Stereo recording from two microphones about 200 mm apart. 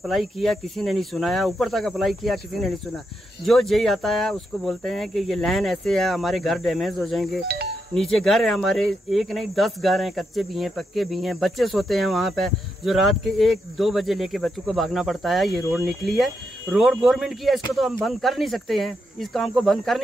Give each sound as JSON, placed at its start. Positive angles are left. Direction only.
{"t": 0.0, "sound": "speech", "side_deg": 0}
{"t": 7.4, "sound": "doorbell", "side_deg": -50}
{"t": 7.9, "sound": "speech", "side_deg": 0}